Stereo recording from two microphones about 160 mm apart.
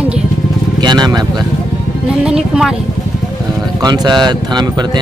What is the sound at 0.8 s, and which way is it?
Speech, 25° right (ahead or behind).